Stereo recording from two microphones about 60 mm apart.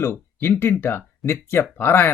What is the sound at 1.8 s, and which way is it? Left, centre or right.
Speech, left.